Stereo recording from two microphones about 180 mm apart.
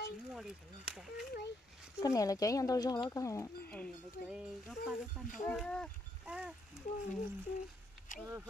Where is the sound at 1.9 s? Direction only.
20° left (ahead or behind).